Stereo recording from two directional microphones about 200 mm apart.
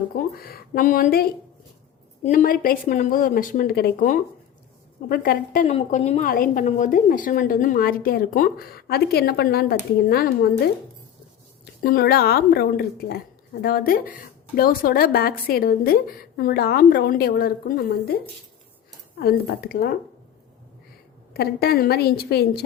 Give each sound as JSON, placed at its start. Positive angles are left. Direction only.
{"t": 0.2, "sound": "a woman's voice", "side_deg": 50}
{"t": 5.7, "sound": "a woman's voice", "side_deg": 30}
{"t": 19.2, "sound": "a woman's voice", "side_deg": 50}
{"t": 21.3, "sound": "a woman's voice", "side_deg": 50}